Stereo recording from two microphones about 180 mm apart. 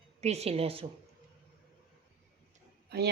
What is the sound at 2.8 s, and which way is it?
Speech, 65° right (ahead or behind).